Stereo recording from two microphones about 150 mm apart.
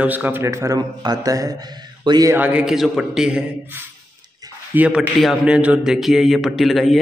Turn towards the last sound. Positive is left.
turn(degrees=0)  # may be behind; listen again after turning